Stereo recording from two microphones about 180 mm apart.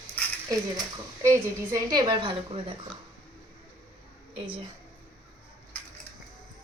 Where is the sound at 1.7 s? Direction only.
20° right (ahead or behind).